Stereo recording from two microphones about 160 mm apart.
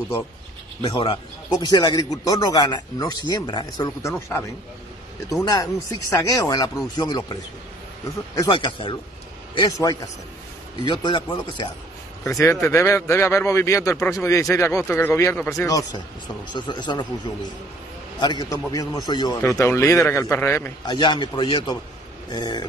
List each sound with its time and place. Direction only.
0.8 s a man's voice: 30° left (ahead or behind)
5.3 s a man's voice: 25° left (ahead or behind)
8.4 s a man's voice: 25° left (ahead or behind)
18.2 s a man's voice: 25° left (ahead or behind)